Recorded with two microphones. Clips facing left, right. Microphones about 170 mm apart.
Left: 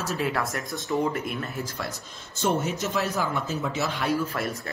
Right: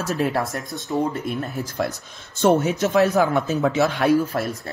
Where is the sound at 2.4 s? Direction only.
65° right (ahead or behind).